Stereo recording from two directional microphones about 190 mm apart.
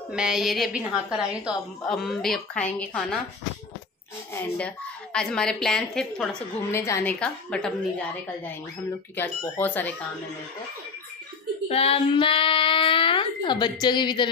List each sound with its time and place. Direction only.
0.1 s a woman's voice: 5° right (ahead or behind)
4.3 s a woman's voice: 10° left (ahead or behind)
9.1 s a woman's voice: 10° left (ahead or behind)
11.7 s speech: 30° left (ahead or behind)